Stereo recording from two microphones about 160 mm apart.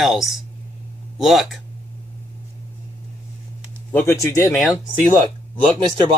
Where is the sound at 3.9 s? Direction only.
15° left (ahead or behind).